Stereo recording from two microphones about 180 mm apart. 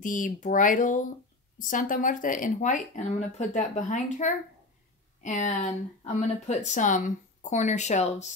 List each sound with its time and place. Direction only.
0.0 s speech: 45° left (ahead or behind)